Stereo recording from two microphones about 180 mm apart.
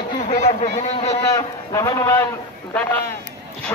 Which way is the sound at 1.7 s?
15° left (ahead or behind).